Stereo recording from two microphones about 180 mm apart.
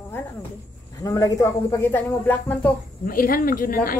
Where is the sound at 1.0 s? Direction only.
20° left (ahead or behind).